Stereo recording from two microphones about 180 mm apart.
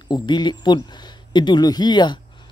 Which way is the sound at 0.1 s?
25° left (ahead or behind).